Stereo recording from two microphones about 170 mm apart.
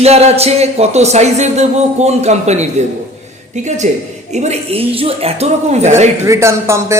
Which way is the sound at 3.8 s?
45° right (ahead or behind).